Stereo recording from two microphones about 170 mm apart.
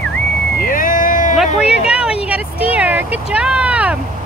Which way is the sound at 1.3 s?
Centre (ahead or behind).